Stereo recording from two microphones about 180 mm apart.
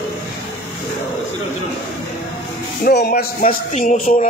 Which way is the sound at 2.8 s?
60° left (ahead or behind).